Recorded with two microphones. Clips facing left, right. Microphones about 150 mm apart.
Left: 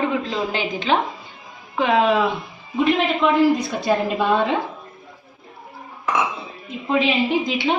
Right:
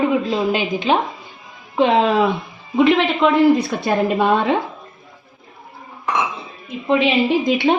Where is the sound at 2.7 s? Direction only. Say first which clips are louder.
Right 4 dB; 70° right (ahead or behind).